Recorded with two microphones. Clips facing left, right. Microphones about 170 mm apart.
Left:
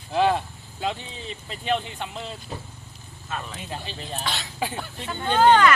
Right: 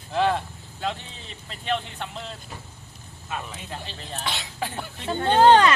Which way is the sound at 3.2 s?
10° right (ahead or behind).